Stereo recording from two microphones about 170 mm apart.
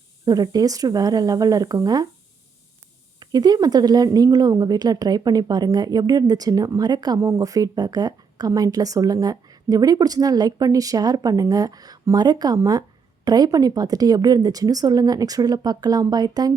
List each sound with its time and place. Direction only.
0.3 s speech: 20° right (ahead or behind)
3.2 s speech: 25° right (ahead or behind)